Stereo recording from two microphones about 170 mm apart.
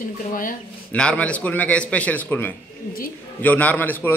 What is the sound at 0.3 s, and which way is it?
Speech, 55° left (ahead or behind).